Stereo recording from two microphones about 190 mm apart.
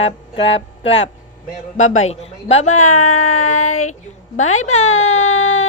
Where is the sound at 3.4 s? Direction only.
40° left (ahead or behind).